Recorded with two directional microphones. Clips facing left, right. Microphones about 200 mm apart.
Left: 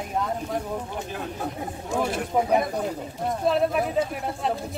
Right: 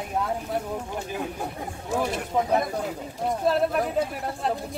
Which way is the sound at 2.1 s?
5° left (ahead or behind).